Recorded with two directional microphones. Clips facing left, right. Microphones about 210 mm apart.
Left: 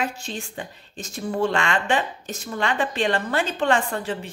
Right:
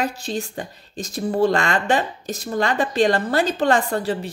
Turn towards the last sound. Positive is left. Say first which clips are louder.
# right 3 dB
turn(degrees=-35)  # may be behind; listen again after turning